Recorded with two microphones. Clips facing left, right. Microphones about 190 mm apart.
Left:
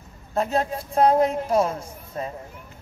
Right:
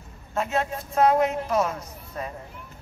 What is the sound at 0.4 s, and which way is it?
A man's voice, 35° left (ahead or behind).